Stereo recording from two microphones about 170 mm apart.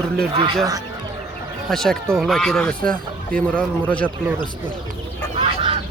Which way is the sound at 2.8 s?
55° right (ahead or behind).